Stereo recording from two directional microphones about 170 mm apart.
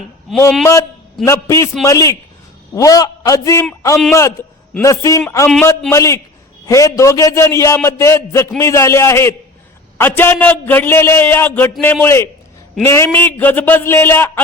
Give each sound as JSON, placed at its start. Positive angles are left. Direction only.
{"t": 0.6, "sound": "a man's voice", "side_deg": 20}